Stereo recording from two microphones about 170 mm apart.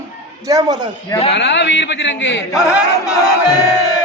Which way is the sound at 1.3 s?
90° left.